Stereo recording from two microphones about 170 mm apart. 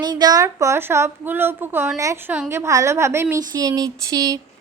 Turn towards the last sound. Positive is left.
turn(degrees=-20)  # may be behind; listen again after turning